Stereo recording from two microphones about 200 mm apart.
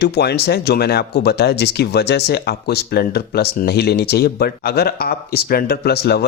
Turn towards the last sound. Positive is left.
turn(degrees=50)  # may be behind; listen again after turning